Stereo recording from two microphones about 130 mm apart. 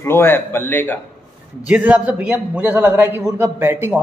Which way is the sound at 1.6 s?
10° right (ahead or behind).